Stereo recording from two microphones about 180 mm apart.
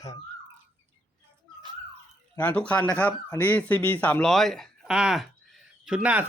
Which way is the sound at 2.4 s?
5° left (ahead or behind).